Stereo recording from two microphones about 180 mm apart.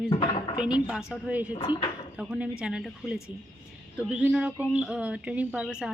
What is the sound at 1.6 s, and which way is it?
Speech, 25° left (ahead or behind).